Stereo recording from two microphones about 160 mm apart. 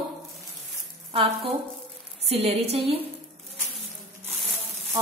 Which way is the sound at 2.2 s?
40° right (ahead or behind).